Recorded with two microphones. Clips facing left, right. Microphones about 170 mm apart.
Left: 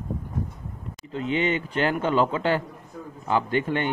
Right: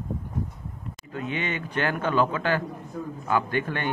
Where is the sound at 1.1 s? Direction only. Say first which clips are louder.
Left 6 dB; 25° left (ahead or behind).